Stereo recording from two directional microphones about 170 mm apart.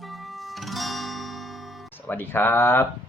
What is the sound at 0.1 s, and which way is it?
Music, centre (ahead or behind).